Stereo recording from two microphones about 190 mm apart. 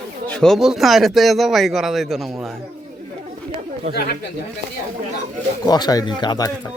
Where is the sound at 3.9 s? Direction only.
35° right (ahead or behind).